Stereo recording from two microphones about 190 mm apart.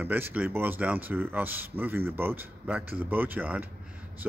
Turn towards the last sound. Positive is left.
turn(degrees=-10)  # may be behind; listen again after turning